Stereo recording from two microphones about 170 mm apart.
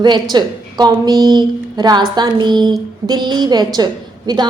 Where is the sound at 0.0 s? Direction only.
25° right (ahead or behind).